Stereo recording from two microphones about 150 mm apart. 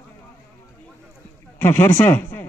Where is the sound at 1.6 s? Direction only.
15° left (ahead or behind).